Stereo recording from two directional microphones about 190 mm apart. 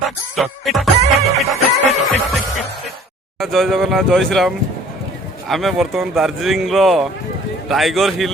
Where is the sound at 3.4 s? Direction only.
Centre (ahead or behind).